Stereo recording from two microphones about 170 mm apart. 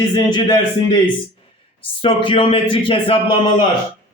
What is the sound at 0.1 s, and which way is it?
Speech, 25° left (ahead or behind).